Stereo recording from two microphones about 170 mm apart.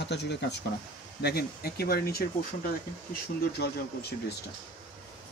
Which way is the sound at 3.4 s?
70° left (ahead or behind).